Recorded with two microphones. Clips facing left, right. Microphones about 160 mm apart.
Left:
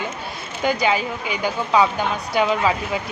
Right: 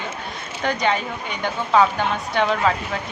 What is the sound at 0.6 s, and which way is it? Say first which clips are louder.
Speech: left 2 dB; 5° left (ahead or behind).